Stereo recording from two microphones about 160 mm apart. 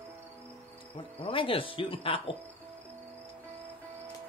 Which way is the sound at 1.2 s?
35° left (ahead or behind).